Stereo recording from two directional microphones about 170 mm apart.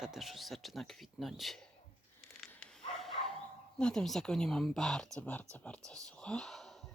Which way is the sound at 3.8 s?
5° left (ahead or behind).